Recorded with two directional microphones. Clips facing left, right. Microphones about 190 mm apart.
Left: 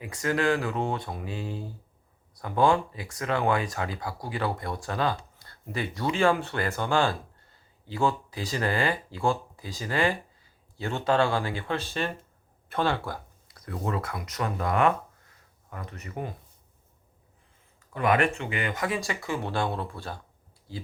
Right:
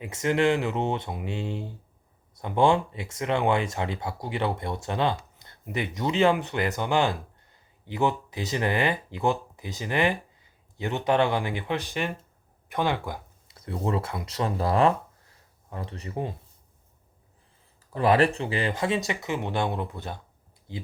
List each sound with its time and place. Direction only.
0.0 s speech: 20° right (ahead or behind)
17.9 s speech: 30° right (ahead or behind)